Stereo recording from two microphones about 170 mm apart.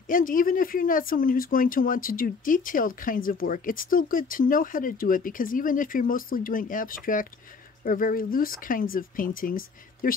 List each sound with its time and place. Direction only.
0.1 s speech: 55° left (ahead or behind)